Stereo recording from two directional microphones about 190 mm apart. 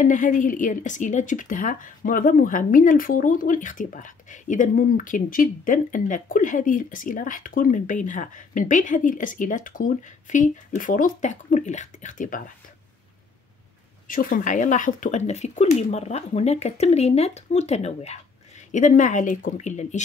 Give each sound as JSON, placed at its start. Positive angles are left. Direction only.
{"t": 0.0, "sound": "speech", "side_deg": 45}
{"t": 14.0, "sound": "speech", "side_deg": 45}